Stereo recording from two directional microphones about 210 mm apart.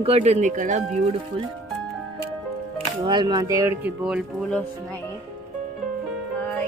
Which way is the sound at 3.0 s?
20° right (ahead or behind).